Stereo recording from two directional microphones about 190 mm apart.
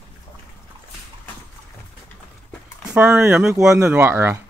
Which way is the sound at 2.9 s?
10° right (ahead or behind).